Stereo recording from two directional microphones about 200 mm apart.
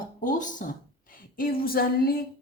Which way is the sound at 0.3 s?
40° left (ahead or behind).